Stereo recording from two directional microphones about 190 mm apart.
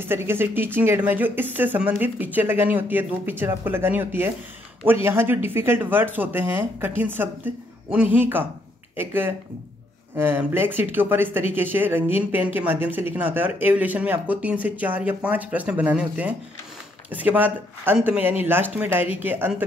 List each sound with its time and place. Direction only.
0.0 s speech: 10° right (ahead or behind)